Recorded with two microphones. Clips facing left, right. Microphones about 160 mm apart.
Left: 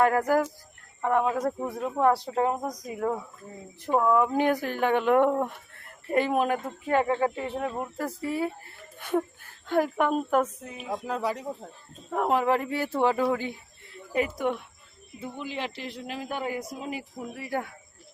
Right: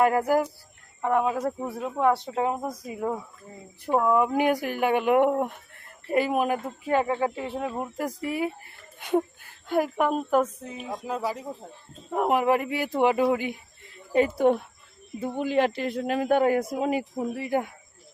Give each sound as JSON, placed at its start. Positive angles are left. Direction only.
{"t": 0.0, "sound": "a woman's voice", "side_deg": -10}
{"t": 12.1, "sound": "speech", "side_deg": -15}
{"t": 14.3, "sound": "speech", "side_deg": -35}
{"t": 15.2, "sound": "a man's voice", "side_deg": -50}
{"t": 17.3, "sound": "speech", "side_deg": -20}